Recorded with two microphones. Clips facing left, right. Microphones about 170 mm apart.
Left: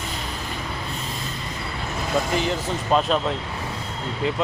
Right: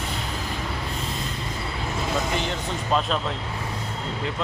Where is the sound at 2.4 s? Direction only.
Centre (ahead or behind).